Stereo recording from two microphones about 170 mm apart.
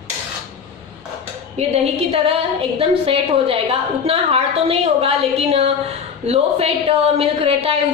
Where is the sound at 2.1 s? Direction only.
35° right (ahead or behind).